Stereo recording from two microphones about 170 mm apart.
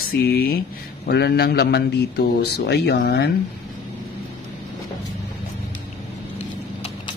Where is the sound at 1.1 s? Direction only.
75° left (ahead or behind).